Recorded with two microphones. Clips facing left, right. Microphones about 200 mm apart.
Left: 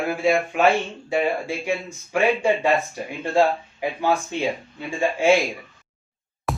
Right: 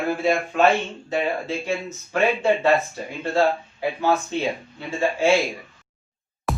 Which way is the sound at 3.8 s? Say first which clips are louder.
Right 1 dB; 15° left (ahead or behind).